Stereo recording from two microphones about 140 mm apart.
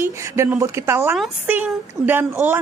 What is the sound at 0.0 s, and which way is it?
A woman's voice, 20° right (ahead or behind).